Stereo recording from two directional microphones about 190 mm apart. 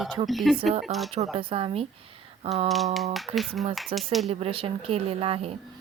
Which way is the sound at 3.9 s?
30° right (ahead or behind).